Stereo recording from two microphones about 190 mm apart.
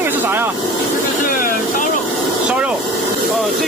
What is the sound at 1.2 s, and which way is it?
Vehicle, 45° left (ahead or behind).